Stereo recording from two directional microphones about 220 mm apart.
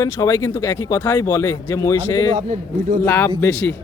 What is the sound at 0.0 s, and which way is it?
Speech, 15° left (ahead or behind).